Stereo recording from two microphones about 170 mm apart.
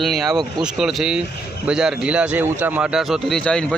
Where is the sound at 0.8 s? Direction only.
Centre (ahead or behind).